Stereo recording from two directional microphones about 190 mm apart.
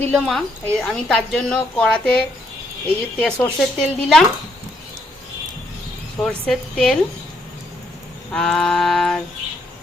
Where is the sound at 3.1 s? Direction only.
5° left (ahead or behind).